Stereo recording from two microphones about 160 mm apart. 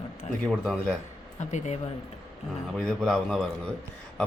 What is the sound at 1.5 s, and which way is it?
Speech, 45° left (ahead or behind).